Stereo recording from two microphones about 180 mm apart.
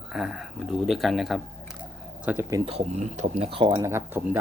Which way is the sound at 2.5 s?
20° right (ahead or behind).